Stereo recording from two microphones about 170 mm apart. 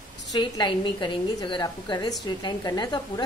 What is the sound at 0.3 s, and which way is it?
A woman's voice, 25° left (ahead or behind).